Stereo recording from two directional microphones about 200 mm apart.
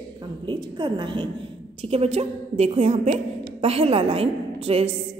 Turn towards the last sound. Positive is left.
turn(degrees=-30)  # may be behind; listen again after turning